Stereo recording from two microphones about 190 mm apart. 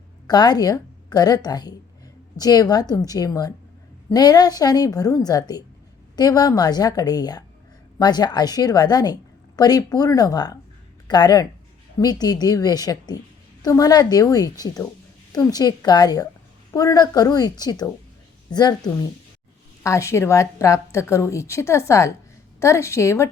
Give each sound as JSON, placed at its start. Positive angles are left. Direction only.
{"t": 0.3, "sound": "a woman's voice", "side_deg": 20}
{"t": 19.8, "sound": "a woman's voice", "side_deg": 15}